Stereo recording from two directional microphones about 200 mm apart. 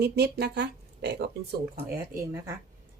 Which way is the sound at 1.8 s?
10° right (ahead or behind).